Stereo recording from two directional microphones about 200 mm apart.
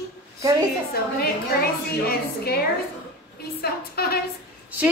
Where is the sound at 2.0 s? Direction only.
50° left (ahead or behind).